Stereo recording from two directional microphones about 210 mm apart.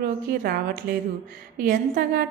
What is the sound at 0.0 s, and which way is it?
Speech, 45° right (ahead or behind).